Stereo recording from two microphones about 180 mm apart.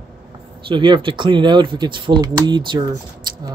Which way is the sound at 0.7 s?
25° right (ahead or behind).